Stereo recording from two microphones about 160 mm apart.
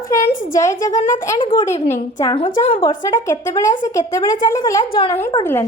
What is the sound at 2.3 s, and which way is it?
Speech, 35° left (ahead or behind).